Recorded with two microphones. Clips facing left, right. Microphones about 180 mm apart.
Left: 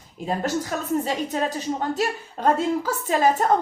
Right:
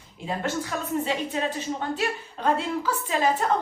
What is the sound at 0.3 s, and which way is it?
A woman's voice, 40° left (ahead or behind).